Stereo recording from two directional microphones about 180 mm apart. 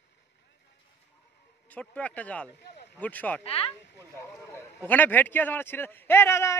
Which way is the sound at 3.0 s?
10° left (ahead or behind).